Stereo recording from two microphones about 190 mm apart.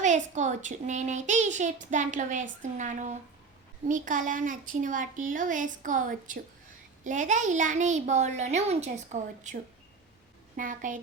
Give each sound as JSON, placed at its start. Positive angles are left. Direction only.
{"t": 0.3, "sound": "a child's voice", "side_deg": -40}
{"t": 10.6, "sound": "a woman's voice", "side_deg": -45}